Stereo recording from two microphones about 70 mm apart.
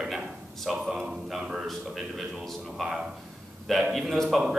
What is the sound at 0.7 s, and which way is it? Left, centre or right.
A man's voice, centre.